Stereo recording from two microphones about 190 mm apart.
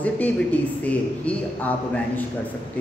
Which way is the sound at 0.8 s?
10° left (ahead or behind).